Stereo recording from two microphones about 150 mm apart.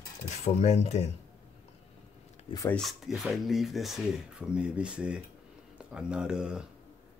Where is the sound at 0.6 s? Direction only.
50° left (ahead or behind).